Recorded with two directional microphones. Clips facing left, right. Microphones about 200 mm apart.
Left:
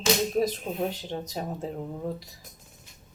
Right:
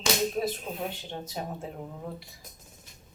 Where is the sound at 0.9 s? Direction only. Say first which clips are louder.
Left 4 dB; 40° left (ahead or behind).